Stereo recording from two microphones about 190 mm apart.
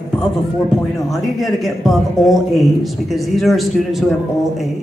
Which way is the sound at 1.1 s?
Centre (ahead or behind).